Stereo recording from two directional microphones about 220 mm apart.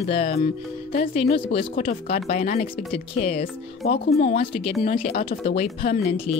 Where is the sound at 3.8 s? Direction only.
45° left (ahead or behind).